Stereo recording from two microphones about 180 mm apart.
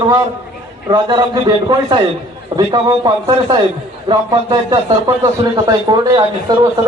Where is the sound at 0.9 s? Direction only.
25° right (ahead or behind).